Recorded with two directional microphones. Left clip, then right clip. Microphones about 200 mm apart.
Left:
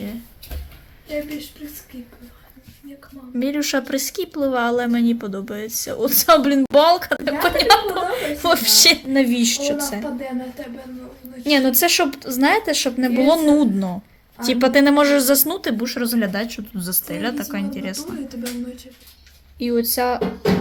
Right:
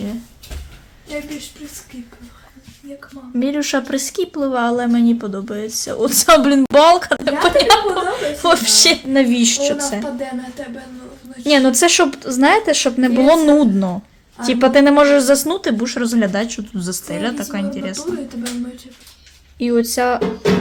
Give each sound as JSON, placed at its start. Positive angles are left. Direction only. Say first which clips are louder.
{"t": 3.3, "sound": "speech", "louder": "right 3 dB", "side_deg": -10}
{"t": 11.4, "sound": "speech", "louder": "right 4 dB", "side_deg": -20}
{"t": 19.5, "sound": "speech", "louder": "right 4 dB", "side_deg": -15}